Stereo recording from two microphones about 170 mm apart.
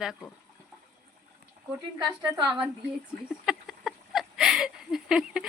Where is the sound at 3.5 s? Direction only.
Centre (ahead or behind).